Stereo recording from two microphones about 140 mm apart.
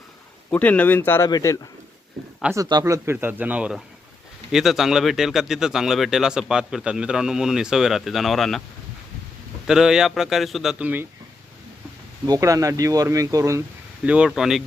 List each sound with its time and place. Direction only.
0.5 s speech: 10° left (ahead or behind)
2.6 s speech: 25° right (ahead or behind); by 8.6 s centre (ahead or behind)
9.6 s speech: 5° right (ahead or behind)
12.2 s speech: 25° right (ahead or behind)
14.0 s speech: 5° right (ahead or behind)